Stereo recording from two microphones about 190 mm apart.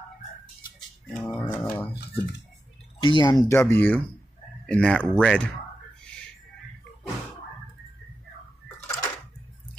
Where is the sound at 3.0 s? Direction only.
25° left (ahead or behind); by 5.5 s 5° left (ahead or behind).